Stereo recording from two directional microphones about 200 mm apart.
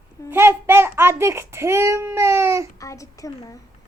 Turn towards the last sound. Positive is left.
turn(degrees=15)  # may be behind; listen again after turning